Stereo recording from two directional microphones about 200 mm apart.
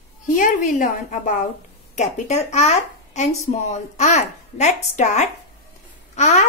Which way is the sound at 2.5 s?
35° left (ahead or behind).